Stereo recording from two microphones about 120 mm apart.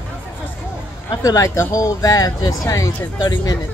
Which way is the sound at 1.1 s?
30° left (ahead or behind).